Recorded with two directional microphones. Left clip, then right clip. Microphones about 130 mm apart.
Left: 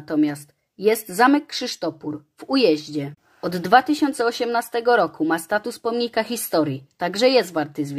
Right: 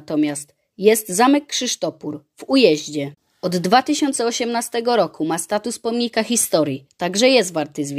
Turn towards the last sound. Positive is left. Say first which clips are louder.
# right 1 dB
turn(degrees=-35)  # may be behind; listen again after turning